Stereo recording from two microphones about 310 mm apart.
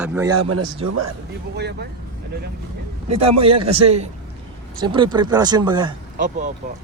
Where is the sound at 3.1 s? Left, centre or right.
Centre.